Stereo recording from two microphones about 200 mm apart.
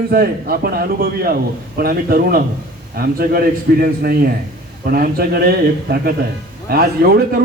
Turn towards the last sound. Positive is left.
turn(degrees=-50)  # may be behind; listen again after turning